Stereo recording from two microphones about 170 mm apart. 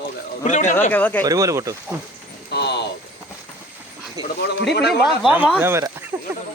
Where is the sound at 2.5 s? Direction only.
80° left.